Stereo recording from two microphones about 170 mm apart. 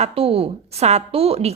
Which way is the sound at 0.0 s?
35° right (ahead or behind).